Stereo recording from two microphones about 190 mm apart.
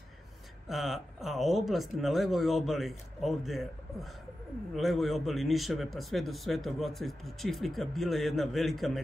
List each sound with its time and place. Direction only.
0.7 s a man's voice: centre (ahead or behind)